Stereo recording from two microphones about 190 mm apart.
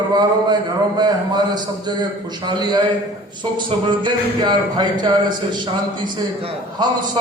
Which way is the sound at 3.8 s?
25° right (ahead or behind).